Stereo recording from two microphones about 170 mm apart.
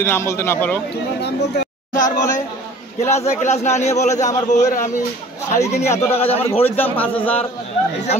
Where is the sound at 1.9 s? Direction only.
45° left (ahead or behind).